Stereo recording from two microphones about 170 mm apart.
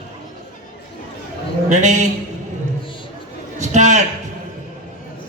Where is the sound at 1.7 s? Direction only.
45° right (ahead or behind).